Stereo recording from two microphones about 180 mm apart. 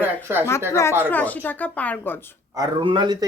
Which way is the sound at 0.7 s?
15° left (ahead or behind).